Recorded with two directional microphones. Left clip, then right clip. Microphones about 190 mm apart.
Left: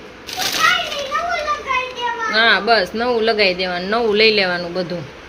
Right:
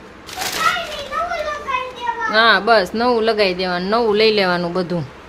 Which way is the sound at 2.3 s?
15° right (ahead or behind).